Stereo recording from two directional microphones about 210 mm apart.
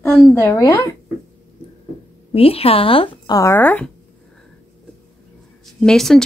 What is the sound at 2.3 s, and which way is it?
A woman's voice, 25° left (ahead or behind).